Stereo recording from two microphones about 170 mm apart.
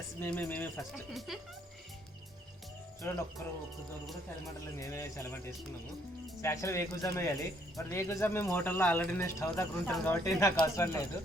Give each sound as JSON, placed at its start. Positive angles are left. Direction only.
{"t": 0.2, "sound": "speech", "side_deg": 10}
{"t": 1.3, "sound": "speech", "side_deg": 0}
{"t": 3.0, "sound": "speech", "side_deg": 15}
{"t": 4.6, "sound": "speech", "side_deg": 15}
{"t": 10.2, "sound": "speech", "side_deg": 20}